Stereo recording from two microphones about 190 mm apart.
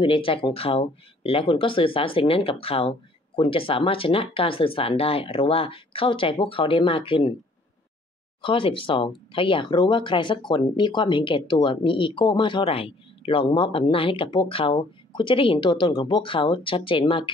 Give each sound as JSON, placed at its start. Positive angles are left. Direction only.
{"t": 0.0, "sound": "speech", "side_deg": 30}
{"t": 8.4, "sound": "speech", "side_deg": 25}